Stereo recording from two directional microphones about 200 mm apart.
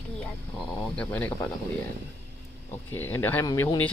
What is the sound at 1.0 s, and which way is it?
Speech, 5° left (ahead or behind).